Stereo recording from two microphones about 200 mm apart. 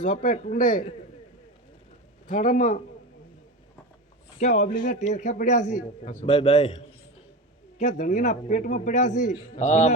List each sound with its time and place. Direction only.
0.0 s a man's voice: 40° left (ahead or behind)
2.2 s a man's voice: 40° left (ahead or behind)
4.4 s a man's voice: 35° left (ahead or behind)
7.8 s a man's voice: 35° left (ahead or behind)